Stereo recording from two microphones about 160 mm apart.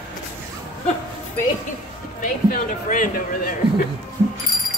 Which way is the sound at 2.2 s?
55° left (ahead or behind).